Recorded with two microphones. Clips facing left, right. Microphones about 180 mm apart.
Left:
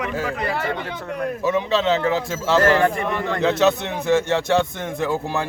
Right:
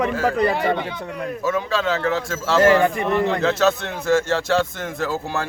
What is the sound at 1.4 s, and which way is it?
A man's voice, 20° left (ahead or behind).